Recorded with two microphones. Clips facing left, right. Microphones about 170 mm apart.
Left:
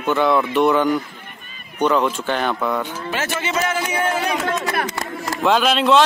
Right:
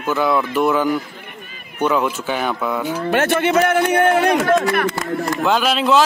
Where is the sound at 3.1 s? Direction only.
60° right (ahead or behind).